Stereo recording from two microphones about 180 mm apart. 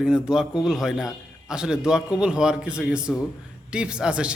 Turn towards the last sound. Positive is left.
turn(degrees=-5)  # may be behind; listen again after turning